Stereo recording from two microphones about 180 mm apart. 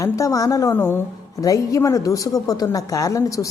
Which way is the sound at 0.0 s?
20° left (ahead or behind).